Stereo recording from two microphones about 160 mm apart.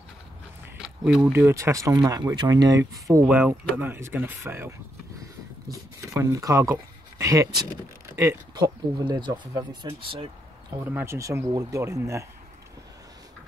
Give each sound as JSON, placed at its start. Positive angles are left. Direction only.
{"t": 0.7, "sound": "a sound", "side_deg": -5}
{"t": 1.3, "sound": "speech", "side_deg": -15}
{"t": 10.7, "sound": "speech", "side_deg": -15}